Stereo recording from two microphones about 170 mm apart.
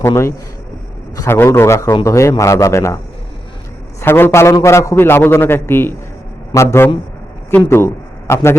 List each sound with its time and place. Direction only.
0.0 s a man's voice: 15° left (ahead or behind)
4.0 s a man's voice: 15° left (ahead or behind)